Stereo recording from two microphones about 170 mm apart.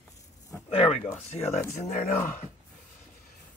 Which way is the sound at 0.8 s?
40° left (ahead or behind).